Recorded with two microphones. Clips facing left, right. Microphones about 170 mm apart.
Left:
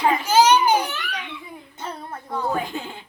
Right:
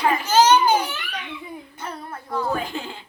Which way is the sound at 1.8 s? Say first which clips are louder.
Left 3 dB; 20° left (ahead or behind).